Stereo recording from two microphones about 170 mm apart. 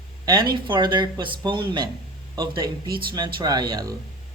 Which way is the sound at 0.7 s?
25° right (ahead or behind).